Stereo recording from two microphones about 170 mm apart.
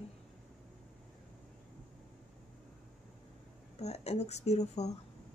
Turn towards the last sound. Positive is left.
turn(degrees=40)  # may be behind; listen again after turning